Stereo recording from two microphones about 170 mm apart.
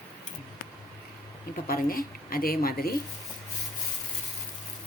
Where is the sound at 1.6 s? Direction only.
60° left (ahead or behind).